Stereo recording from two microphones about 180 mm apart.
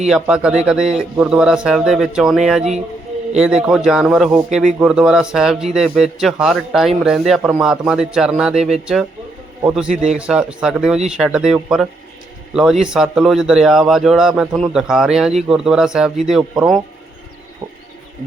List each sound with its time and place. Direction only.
0.1 s a man's voice: 5° right (ahead or behind)